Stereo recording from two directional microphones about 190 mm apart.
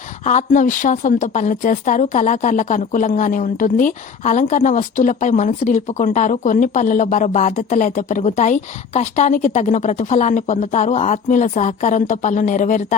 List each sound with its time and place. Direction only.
0.3 s a woman's voice: 40° left (ahead or behind)